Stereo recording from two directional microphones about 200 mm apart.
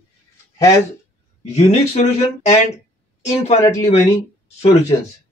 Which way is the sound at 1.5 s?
30° left (ahead or behind).